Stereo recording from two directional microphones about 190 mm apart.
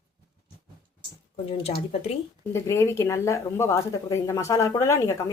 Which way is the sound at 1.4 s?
30° left (ahead or behind).